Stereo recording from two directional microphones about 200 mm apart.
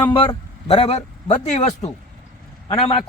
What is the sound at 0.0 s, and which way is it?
A man's voice, 25° left (ahead or behind).